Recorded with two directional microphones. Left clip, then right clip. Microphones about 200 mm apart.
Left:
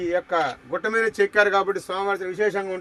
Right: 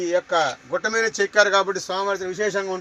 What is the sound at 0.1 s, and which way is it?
Speech, 25° left (ahead or behind).